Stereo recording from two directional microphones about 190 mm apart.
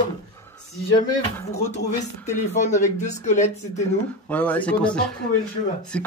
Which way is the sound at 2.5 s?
40° left (ahead or behind).